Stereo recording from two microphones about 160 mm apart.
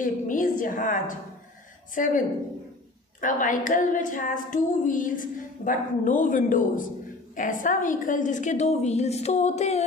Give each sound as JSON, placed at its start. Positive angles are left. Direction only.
{"t": 0.0, "sound": "child singing", "side_deg": 55}
{"t": 7.3, "sound": "a woman's voice", "side_deg": 55}